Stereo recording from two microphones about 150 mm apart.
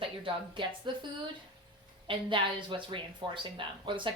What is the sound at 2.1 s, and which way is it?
A woman's voice, 35° right (ahead or behind).